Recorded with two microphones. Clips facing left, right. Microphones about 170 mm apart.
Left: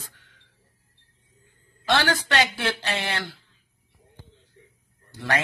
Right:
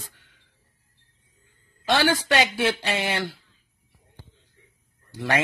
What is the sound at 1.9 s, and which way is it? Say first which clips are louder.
Speech: right 2 dB; 15° right (ahead or behind).